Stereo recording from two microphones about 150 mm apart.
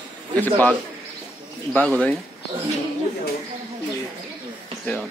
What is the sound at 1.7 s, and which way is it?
Speech, 10° left (ahead or behind).